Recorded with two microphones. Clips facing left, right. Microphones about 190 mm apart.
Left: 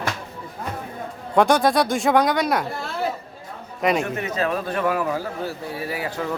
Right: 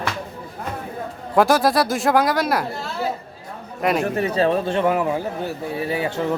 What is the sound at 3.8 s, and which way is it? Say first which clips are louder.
Speech: right 1 dB; centre (ahead or behind).